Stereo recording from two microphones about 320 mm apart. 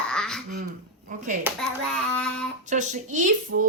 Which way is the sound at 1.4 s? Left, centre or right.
Centre.